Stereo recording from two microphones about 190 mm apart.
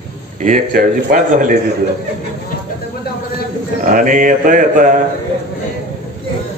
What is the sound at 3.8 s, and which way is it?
Speech, 45° right (ahead or behind).